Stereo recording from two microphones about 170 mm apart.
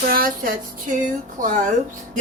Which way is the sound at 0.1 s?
55° right (ahead or behind).